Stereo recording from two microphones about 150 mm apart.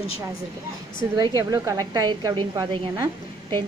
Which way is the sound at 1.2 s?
25° right (ahead or behind).